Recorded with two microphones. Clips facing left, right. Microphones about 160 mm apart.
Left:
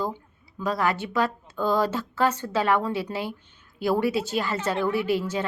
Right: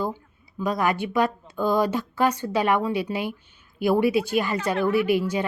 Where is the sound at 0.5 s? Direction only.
15° right (ahead or behind).